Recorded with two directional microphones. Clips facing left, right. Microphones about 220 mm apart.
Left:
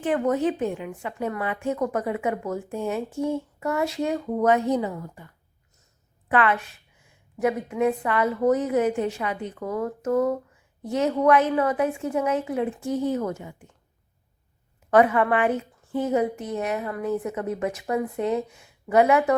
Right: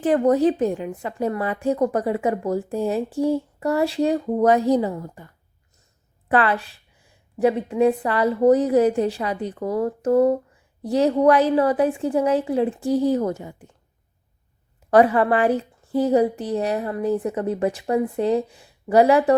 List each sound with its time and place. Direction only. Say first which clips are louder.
0.0 s a woman's voice: right 5 dB; 35° right (ahead or behind)
14.8 s a woman's voice: right 3 dB; 35° right (ahead or behind)